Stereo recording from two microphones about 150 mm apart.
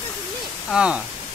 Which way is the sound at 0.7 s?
5° right (ahead or behind).